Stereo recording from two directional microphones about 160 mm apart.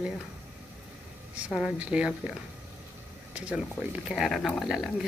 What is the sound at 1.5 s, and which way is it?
Speech, 5° right (ahead or behind).